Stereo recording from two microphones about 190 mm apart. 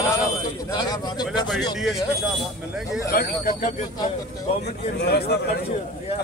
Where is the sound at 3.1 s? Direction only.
50° left (ahead or behind).